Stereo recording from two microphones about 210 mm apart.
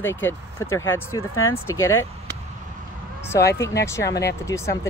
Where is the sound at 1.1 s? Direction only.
80° left.